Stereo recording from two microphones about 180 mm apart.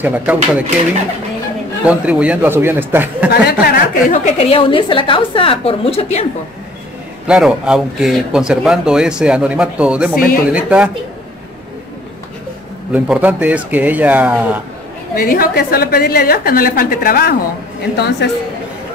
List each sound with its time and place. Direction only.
0.0 s speech: 10° right (ahead or behind)
1.9 s speech: 5° right (ahead or behind)
3.6 s speech: 50° left (ahead or behind)
4.4 s a woman's voice: 30° left (ahead or behind)
7.2 s speech: 5° right (ahead or behind)
12.9 s speech: 10° right (ahead or behind)
15.1 s a woman's voice: 50° left (ahead or behind)
17.9 s speech: 70° left (ahead or behind)